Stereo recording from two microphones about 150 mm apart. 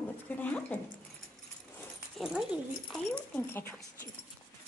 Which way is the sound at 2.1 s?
5° right (ahead or behind).